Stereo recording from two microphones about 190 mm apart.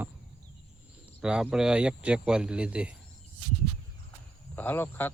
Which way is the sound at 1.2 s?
5° right (ahead or behind).